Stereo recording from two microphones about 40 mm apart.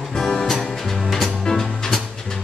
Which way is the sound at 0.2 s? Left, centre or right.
Centre.